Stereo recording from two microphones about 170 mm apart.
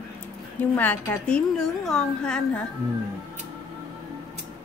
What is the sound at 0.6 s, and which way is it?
A woman's voice, 10° left (ahead or behind).